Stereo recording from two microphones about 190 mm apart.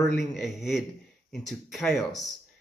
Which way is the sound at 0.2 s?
Centre (ahead or behind).